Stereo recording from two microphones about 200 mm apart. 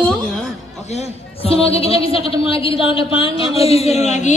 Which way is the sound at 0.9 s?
30° left (ahead or behind).